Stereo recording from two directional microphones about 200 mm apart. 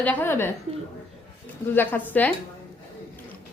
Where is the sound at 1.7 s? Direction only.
10° left (ahead or behind).